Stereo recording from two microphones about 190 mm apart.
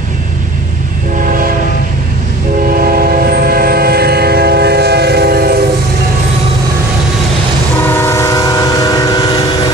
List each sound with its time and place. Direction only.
2.8 s train: 50° right (ahead or behind)
7.8 s train: 10° left (ahead or behind)